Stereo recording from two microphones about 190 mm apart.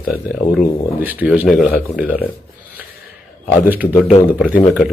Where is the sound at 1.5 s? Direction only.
55° left (ahead or behind).